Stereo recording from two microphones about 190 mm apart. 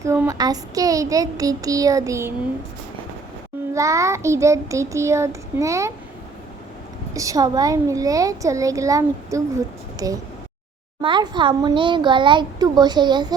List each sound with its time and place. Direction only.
0.0 s a child's voice: 15° right (ahead or behind)
3.8 s a child's voice: 15° right (ahead or behind)
7.1 s a child's voice: 15° right (ahead or behind)